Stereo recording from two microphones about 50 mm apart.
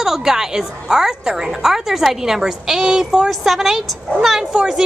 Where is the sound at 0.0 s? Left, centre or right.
Centre.